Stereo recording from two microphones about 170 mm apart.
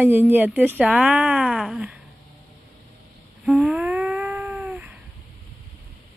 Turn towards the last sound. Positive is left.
turn(degrees=-10)  # may be behind; listen again after turning